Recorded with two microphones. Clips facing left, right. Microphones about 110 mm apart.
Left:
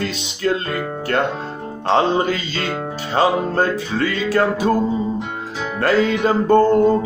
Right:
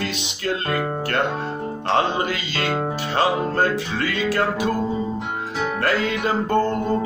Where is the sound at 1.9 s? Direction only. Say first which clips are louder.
Left 5 dB; 25° left (ahead or behind).